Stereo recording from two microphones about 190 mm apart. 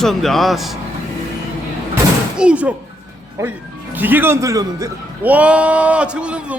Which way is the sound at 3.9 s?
10° right (ahead or behind).